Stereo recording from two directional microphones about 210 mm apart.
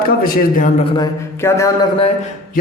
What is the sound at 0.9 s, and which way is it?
Speech, 15° left (ahead or behind).